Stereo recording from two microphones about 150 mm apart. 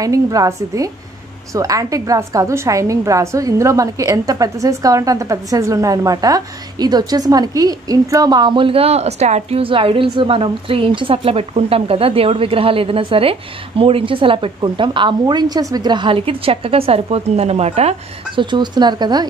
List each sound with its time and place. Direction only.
0.0 s a woman's voice: 25° right (ahead or behind)